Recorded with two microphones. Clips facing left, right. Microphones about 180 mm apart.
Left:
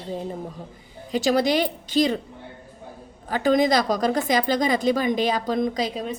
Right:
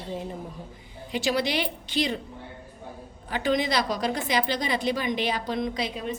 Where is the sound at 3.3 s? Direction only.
45° left (ahead or behind).